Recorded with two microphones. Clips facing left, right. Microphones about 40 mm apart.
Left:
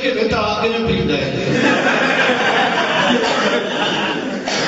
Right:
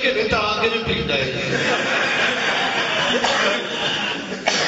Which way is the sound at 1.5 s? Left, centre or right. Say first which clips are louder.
Left 6 dB; left.